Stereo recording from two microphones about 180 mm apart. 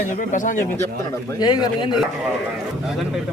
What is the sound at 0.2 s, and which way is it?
Speech, 45° left (ahead or behind).